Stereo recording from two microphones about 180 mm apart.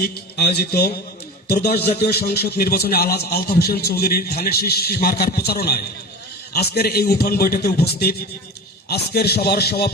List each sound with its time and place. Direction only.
0.0 s a man's voice: 60° left (ahead or behind)